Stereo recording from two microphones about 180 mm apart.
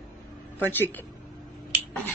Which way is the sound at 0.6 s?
10° left (ahead or behind).